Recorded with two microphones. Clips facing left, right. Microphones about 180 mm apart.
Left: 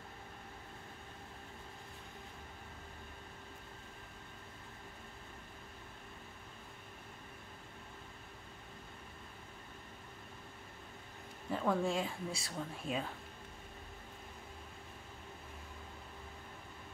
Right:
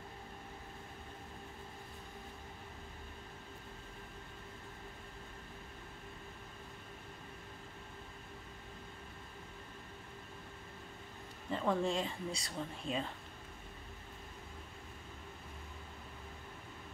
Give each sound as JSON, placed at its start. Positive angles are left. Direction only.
{"t": 11.5, "sound": "speech", "side_deg": 0}